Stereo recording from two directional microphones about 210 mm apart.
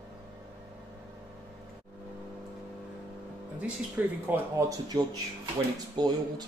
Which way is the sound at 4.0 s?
10° right (ahead or behind).